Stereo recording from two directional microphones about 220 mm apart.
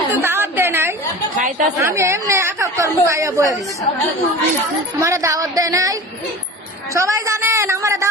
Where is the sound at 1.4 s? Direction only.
35° right (ahead or behind).